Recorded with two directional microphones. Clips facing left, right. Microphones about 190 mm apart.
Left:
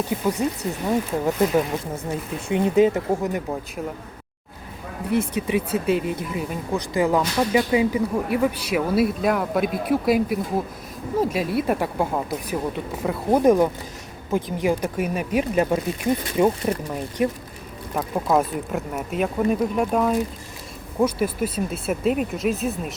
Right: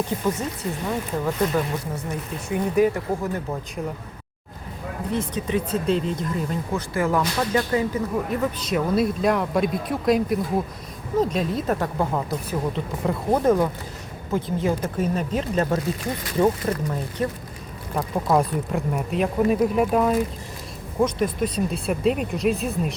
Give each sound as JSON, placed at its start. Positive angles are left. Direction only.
{"t": 0.1, "sound": "speech", "side_deg": 10}
{"t": 5.1, "sound": "speech", "side_deg": 10}
{"t": 17.9, "sound": "speech", "side_deg": 0}